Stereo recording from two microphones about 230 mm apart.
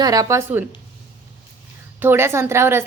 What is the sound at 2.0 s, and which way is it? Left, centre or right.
Speech, centre.